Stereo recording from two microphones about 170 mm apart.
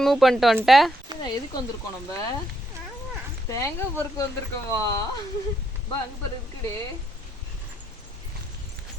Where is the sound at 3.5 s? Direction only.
20° left (ahead or behind).